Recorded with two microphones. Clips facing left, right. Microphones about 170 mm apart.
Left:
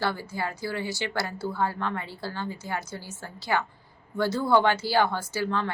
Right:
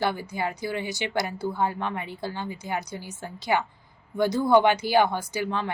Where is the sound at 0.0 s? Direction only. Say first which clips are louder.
Right 2 dB; 15° right (ahead or behind).